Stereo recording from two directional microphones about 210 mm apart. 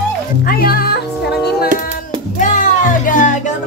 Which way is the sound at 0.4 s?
45° left (ahead or behind).